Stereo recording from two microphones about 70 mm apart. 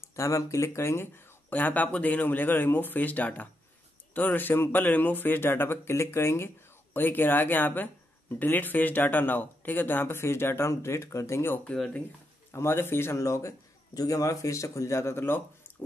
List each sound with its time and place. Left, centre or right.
0.0 s a man's voice: left
1.5 s a man's voice: left
11.6 s speech: centre
12.5 s a man's voice: left